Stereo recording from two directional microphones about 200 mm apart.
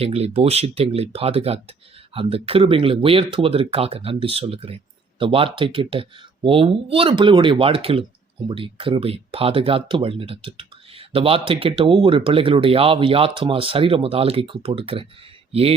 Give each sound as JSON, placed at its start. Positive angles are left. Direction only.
{"t": 0.0, "sound": "speech", "side_deg": -30}